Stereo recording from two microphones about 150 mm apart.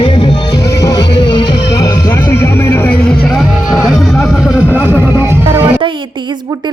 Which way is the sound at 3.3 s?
Centre (ahead or behind).